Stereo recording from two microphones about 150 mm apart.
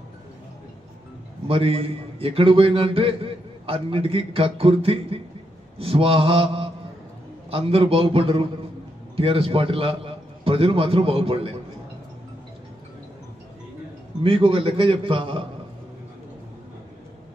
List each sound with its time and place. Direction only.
1.5 s a man's voice: 40° right (ahead or behind)
5.8 s mantra: 40° right (ahead or behind)
7.5 s a man's voice: 40° right (ahead or behind)
14.2 s a man's voice: 40° right (ahead or behind)